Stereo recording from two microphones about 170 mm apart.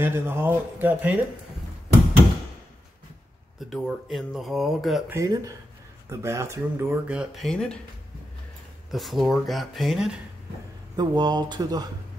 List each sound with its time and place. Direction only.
0.0 s speech: 15° right (ahead or behind)
3.5 s speech: centre (ahead or behind)
5.1 s speech: 20° right (ahead or behind); by 7.8 s 5° left (ahead or behind)
8.9 s speech: centre (ahead or behind)
11.0 s speech: 25° right (ahead or behind)